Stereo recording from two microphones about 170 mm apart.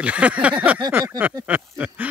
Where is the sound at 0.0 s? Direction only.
5° right (ahead or behind).